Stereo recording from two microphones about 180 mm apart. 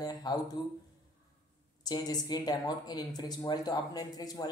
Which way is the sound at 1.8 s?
20° left (ahead or behind).